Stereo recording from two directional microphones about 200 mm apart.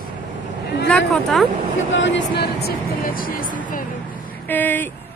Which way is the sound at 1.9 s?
65° left (ahead or behind).